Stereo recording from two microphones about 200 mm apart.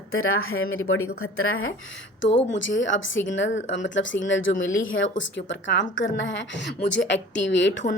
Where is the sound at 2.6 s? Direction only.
70° left (ahead or behind).